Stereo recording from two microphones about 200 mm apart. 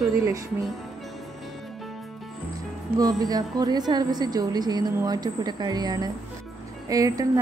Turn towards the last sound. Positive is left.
turn(degrees=-15)  # may be behind; listen again after turning